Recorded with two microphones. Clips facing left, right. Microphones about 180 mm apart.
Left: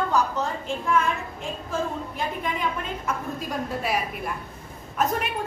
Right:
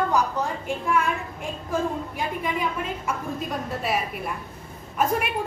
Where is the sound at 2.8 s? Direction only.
Centre (ahead or behind).